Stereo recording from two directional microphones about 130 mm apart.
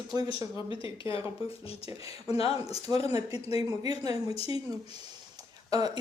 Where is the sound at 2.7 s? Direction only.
25° right (ahead or behind).